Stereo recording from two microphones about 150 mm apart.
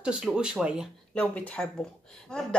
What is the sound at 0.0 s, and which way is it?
Speech, 5° right (ahead or behind).